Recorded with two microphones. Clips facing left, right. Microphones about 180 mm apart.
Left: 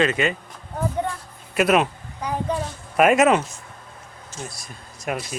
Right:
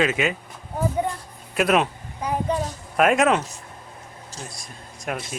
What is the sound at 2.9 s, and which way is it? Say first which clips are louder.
Speech: left 2 dB; 5° left (ahead or behind).